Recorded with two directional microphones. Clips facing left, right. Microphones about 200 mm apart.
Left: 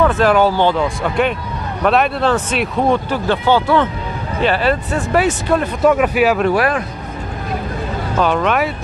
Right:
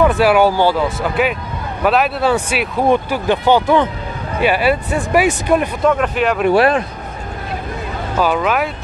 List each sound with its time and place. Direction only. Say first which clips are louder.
0.0 s speech: right 1 dB; 10° right (ahead or behind)
5.8 s speech: left 2 dB; 10° left (ahead or behind)
6.5 s speech: right 3 dB; 25° right (ahead or behind)
8.2 s speech: even; 5° right (ahead or behind)